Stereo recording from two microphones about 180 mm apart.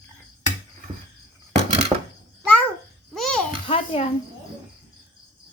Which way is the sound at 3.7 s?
35° left (ahead or behind).